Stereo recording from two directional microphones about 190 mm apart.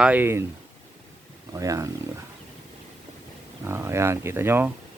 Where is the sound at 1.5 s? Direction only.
15° right (ahead or behind).